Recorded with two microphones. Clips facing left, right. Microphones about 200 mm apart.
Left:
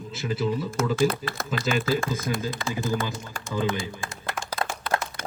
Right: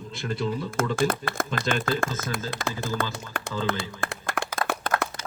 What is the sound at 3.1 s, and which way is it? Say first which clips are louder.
Speech: right 2 dB; 65° right (ahead or behind).